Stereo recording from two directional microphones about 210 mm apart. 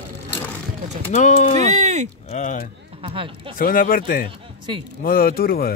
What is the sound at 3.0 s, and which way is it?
Speech, 25° right (ahead or behind).